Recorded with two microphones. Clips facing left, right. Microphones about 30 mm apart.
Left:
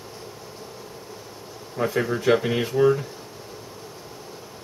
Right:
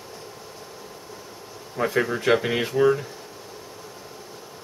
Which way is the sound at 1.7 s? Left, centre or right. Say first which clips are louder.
Right 1 dB; centre.